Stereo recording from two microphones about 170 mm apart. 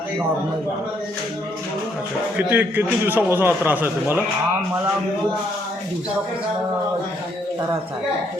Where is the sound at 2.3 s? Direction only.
10° right (ahead or behind).